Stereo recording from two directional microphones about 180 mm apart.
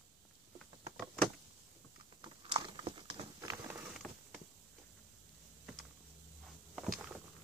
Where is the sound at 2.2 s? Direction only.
25° right (ahead or behind).